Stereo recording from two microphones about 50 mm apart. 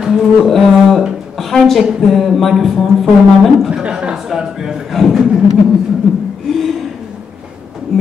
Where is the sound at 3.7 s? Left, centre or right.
Centre.